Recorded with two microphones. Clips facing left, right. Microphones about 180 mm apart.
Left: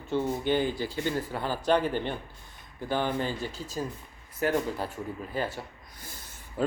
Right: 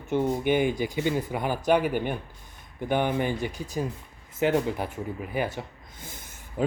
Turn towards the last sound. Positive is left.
turn(degrees=-15)  # may be behind; listen again after turning